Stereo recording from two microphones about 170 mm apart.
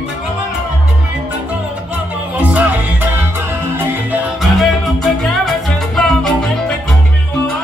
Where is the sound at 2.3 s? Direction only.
10° right (ahead or behind).